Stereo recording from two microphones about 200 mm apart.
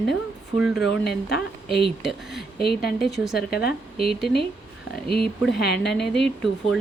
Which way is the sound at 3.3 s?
50° left (ahead or behind).